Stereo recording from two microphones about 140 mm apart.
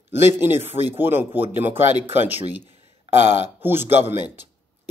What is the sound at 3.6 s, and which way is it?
Speech, 15° right (ahead or behind).